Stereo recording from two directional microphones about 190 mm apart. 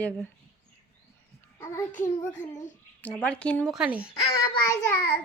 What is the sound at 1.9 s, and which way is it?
Speech, 40° left (ahead or behind).